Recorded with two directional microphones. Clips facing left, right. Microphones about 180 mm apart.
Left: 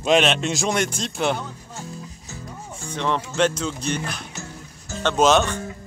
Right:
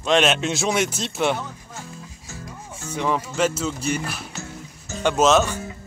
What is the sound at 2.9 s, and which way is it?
A man's voice, 5° right (ahead or behind).